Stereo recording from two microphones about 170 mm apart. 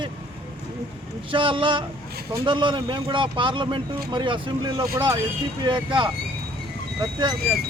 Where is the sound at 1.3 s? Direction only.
30° right (ahead or behind).